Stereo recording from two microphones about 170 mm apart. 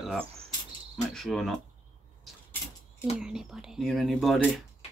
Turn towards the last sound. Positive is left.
turn(degrees=0)  # may be behind; listen again after turning